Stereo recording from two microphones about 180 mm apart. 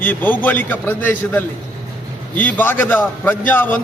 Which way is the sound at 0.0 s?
10° left (ahead or behind).